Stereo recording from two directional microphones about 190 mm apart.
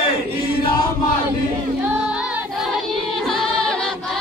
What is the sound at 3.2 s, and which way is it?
Music, 5° left (ahead or behind).